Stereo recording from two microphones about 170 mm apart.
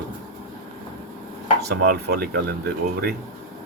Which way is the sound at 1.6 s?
70° right (ahead or behind).